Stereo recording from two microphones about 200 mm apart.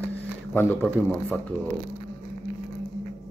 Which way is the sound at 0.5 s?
5° left (ahead or behind).